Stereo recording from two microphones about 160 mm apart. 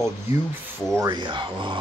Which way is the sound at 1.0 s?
30° right (ahead or behind).